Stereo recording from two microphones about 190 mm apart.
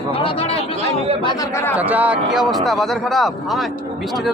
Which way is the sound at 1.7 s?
10° right (ahead or behind).